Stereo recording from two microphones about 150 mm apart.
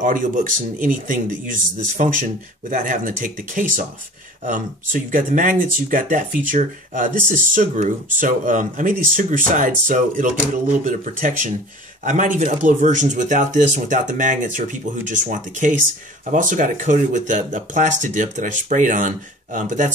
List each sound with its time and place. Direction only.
0.0 s speech: 60° right (ahead or behind)